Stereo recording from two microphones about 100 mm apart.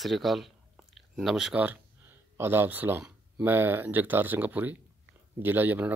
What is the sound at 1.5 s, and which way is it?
Speech, 15° right (ahead or behind).